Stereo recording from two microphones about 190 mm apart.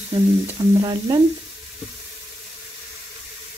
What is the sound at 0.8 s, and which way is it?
Speech, 20° right (ahead or behind).